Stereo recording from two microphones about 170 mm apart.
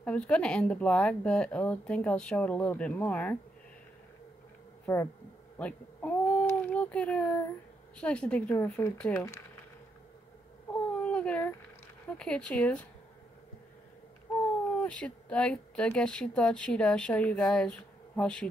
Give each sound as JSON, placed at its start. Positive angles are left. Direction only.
{"t": 0.0, "sound": "speech", "side_deg": 5}
{"t": 4.8, "sound": "speech", "side_deg": 15}
{"t": 5.6, "sound": "a sound", "side_deg": 10}
{"t": 8.0, "sound": "speech", "side_deg": 5}
{"t": 10.7, "sound": "baby cry", "side_deg": 10}
{"t": 12.2, "sound": "speech", "side_deg": 5}
{"t": 14.8, "sound": "speech", "side_deg": 5}